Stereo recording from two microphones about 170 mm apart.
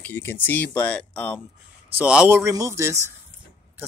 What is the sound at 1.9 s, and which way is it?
Speech, 10° right (ahead or behind).